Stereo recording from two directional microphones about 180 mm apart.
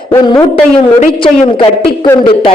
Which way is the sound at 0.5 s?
35° left (ahead or behind).